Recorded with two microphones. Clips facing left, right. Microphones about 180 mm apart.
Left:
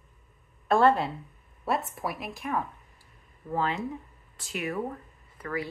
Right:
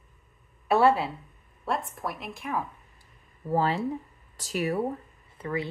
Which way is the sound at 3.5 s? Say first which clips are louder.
Right 4 dB; 35° right (ahead or behind).